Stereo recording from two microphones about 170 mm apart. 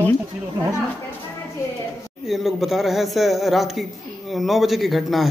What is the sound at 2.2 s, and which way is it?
Speech, centre (ahead or behind).